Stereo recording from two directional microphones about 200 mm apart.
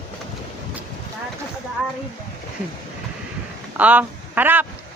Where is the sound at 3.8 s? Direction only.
10° right (ahead or behind).